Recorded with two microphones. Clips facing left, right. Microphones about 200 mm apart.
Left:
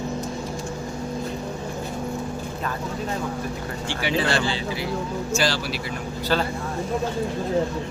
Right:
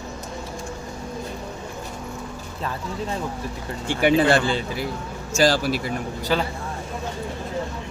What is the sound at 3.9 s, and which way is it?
Speech, 50° right (ahead or behind).